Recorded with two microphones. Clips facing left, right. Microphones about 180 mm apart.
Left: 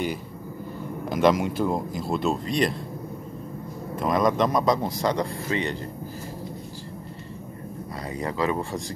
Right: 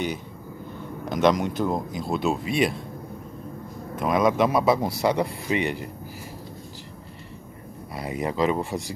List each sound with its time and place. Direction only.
1.0 s speech: 5° left (ahead or behind)
3.9 s speech: centre (ahead or behind)
7.9 s speech: 15° right (ahead or behind)